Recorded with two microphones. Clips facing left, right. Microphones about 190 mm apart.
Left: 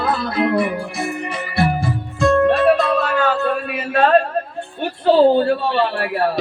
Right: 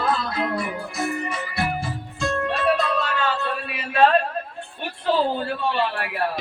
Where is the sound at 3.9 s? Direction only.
45° left (ahead or behind).